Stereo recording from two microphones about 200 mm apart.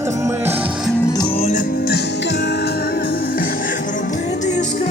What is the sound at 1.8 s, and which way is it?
Music, 55° left (ahead or behind).